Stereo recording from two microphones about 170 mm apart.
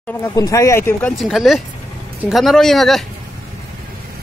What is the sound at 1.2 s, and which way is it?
Speech, centre (ahead or behind).